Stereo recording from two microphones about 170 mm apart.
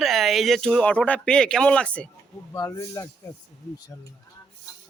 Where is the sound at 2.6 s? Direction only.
15° left (ahead or behind).